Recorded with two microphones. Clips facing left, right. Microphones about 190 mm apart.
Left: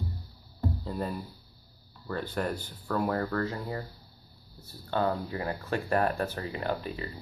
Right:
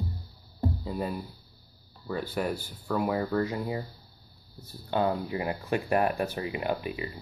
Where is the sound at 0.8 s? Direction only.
5° right (ahead or behind).